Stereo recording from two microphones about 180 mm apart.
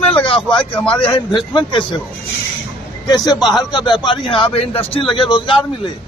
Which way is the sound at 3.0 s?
20° left (ahead or behind).